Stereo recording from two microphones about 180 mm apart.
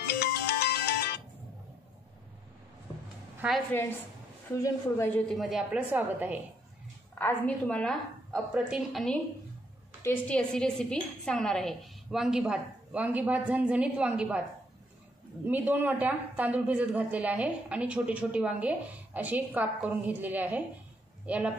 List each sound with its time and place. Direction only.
0.2 s ringtone: 65° left (ahead or behind)
3.3 s a woman's voice: centre (ahead or behind)
4.6 s a woman's voice: 15° left (ahead or behind)
5.3 s speech: centre (ahead or behind)
7.2 s a woman's voice: 10° left (ahead or behind); by 14.4 s 5° right (ahead or behind)
15.4 s speech: 10° right (ahead or behind)